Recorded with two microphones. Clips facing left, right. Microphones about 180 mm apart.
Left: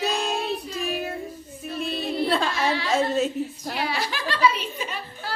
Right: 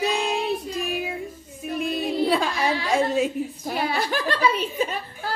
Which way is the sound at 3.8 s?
50° right (ahead or behind).